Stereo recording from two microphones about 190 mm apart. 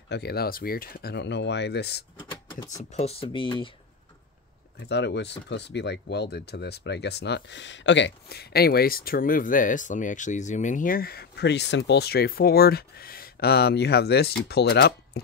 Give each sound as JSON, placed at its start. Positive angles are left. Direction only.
{"t": 0.1, "sound": "speech", "side_deg": 60}
{"t": 2.2, "sound": "a sound", "side_deg": 20}
{"t": 2.8, "sound": "speech", "side_deg": 35}
{"t": 4.7, "sound": "speech", "side_deg": 65}